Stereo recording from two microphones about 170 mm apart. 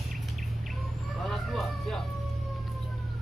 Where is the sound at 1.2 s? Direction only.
Centre (ahead or behind).